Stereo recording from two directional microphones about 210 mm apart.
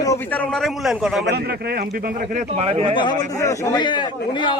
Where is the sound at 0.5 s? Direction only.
Centre (ahead or behind).